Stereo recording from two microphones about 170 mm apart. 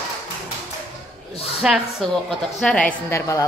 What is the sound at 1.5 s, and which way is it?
A woman's voice, centre (ahead or behind).